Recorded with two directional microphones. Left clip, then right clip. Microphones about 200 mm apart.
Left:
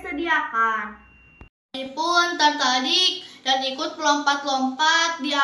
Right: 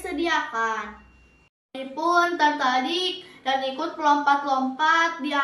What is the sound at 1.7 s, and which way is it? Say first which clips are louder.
A woman's voice: even; 5° right (ahead or behind).